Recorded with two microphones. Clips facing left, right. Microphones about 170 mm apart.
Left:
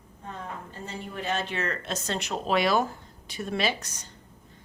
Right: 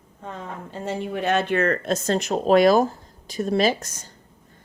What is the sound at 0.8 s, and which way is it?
Speech, 80° right.